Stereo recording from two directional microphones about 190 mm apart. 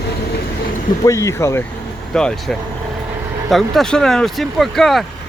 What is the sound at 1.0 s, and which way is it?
Speech, 15° left (ahead or behind).